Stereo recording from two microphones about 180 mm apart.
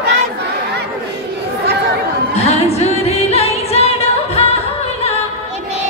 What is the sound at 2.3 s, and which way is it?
Music, 35° left (ahead or behind).